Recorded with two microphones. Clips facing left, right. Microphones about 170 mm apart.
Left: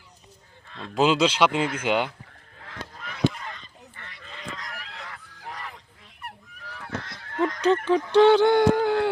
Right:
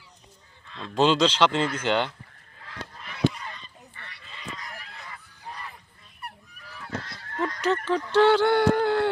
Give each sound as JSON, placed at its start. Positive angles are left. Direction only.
{"t": 0.9, "sound": "speech", "side_deg": 5}
{"t": 4.2, "sound": "goose", "side_deg": 55}
{"t": 7.3, "sound": "speech", "side_deg": 20}